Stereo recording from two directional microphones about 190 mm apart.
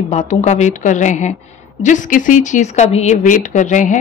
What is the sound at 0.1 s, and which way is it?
Speech, 35° left (ahead or behind).